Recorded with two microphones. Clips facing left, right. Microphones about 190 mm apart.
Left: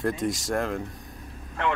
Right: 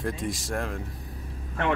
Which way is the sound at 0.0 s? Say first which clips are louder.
Left 4 dB; centre (ahead or behind).